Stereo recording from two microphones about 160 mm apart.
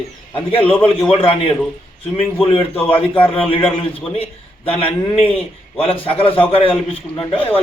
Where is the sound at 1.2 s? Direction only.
35° left (ahead or behind).